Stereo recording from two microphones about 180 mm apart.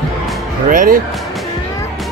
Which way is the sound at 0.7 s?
45° right (ahead or behind).